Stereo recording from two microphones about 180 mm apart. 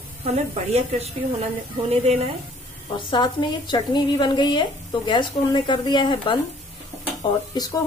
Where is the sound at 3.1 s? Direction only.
25° left (ahead or behind).